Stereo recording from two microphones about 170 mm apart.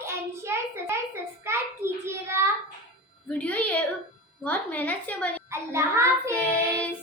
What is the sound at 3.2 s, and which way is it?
A woman's voice, 10° left (ahead or behind).